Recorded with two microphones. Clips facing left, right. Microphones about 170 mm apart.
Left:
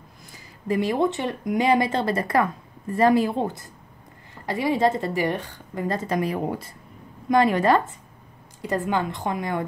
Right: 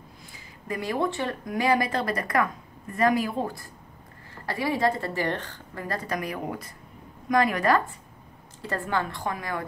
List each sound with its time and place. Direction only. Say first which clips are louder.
0.7 s speech: left 6 dB; 25° left (ahead or behind)
5.9 s speech: left 6 dB; 25° left (ahead or behind)